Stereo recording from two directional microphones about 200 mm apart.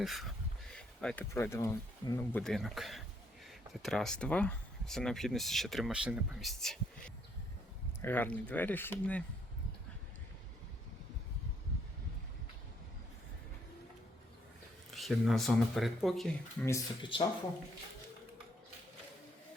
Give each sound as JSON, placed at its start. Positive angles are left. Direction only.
{"t": 0.0, "sound": "speech", "side_deg": 0}
{"t": 2.4, "sound": "speech", "side_deg": 0}
{"t": 8.0, "sound": "speech", "side_deg": 10}
{"t": 14.8, "sound": "speech", "side_deg": 0}
{"t": 16.6, "sound": "speech", "side_deg": 20}